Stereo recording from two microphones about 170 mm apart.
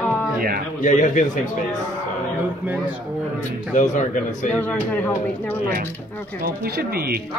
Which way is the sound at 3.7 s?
45° left (ahead or behind).